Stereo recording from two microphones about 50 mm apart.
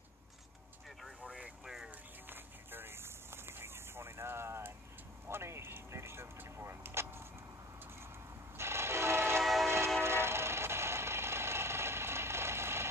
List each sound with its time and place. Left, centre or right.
1.6 s a sound: centre
1.9 s vehicle: right
5.3 s a sound: right
6.5 s vehicle: right
8.5 s train: right
9.4 s train: centre
10.0 s train: right